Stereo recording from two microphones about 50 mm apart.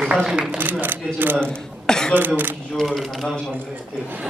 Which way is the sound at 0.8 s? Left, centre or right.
Right.